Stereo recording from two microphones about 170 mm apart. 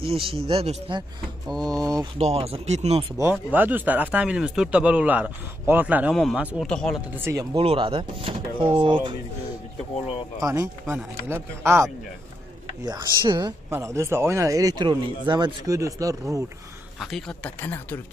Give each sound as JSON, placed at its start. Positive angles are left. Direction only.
{"t": 0.0, "sound": "speech", "side_deg": -35}
{"t": 2.1, "sound": "speech", "side_deg": -35}
{"t": 3.5, "sound": "speech", "side_deg": -10}
{"t": 7.2, "sound": "speech", "side_deg": -15}
{"t": 7.5, "sound": "speech", "side_deg": -30}
{"t": 10.4, "sound": "speech", "side_deg": -20}
{"t": 17.0, "sound": "speech", "side_deg": 5}